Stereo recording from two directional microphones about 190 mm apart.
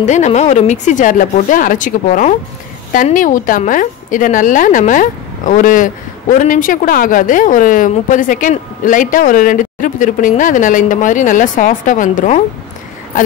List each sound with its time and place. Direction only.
0.0 s a woman's voice: 40° left (ahead or behind)